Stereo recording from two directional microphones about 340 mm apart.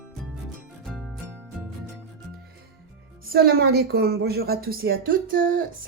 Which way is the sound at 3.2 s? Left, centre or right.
Right.